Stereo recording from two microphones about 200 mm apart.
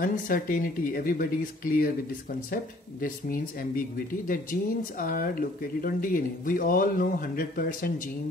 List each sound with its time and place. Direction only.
0.0 s speech: 45° left (ahead or behind)